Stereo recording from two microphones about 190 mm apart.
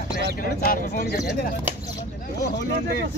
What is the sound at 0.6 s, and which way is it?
Speech, 50° left (ahead or behind).